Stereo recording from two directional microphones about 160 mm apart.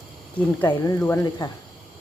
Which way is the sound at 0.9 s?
15° left (ahead or behind).